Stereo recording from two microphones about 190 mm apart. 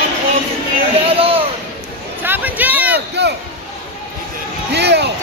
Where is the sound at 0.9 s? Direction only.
30° right (ahead or behind).